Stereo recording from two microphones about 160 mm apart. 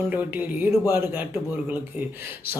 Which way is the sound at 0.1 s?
10° right (ahead or behind).